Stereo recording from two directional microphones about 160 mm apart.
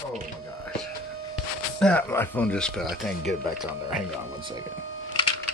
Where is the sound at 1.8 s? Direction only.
10° left (ahead or behind).